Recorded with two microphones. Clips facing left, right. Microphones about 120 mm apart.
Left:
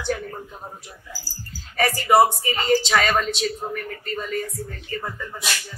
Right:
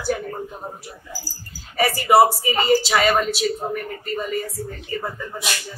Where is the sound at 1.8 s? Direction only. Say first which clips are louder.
Right 2 dB; 10° right (ahead or behind).